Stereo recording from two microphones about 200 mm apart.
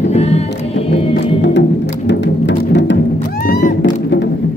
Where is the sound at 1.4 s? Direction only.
60° left (ahead or behind).